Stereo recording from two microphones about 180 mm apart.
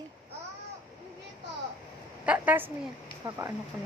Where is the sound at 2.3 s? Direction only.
10° right (ahead or behind).